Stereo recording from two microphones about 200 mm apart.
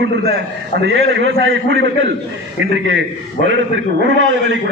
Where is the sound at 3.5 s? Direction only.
65° right (ahead or behind).